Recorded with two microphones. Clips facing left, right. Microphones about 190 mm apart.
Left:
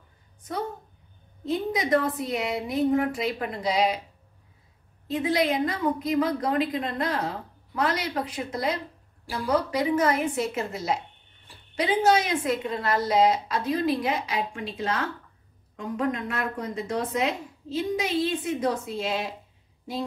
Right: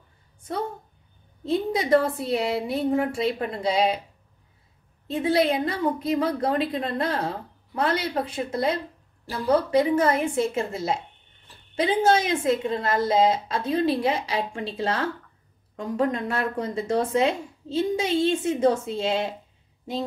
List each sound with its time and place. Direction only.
1.4 s a woman's voice: 30° right (ahead or behind)
5.0 s a woman's voice: 30° right (ahead or behind)